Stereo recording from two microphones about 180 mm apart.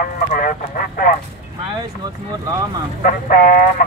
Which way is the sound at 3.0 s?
50° left (ahead or behind).